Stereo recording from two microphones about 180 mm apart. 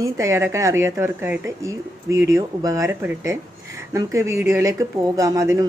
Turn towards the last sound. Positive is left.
turn(degrees=-15)  # may be behind; listen again after turning